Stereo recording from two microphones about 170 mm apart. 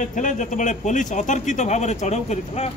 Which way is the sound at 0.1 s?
50° left (ahead or behind).